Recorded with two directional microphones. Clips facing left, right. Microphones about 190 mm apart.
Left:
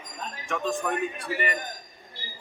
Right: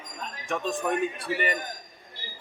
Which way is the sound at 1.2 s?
25° right (ahead or behind).